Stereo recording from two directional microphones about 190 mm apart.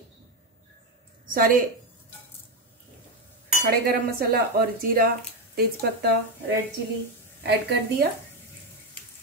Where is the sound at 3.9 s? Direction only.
50° right (ahead or behind).